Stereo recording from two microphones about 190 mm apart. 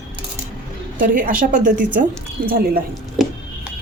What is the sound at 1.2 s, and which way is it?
A woman's voice, 45° right (ahead or behind).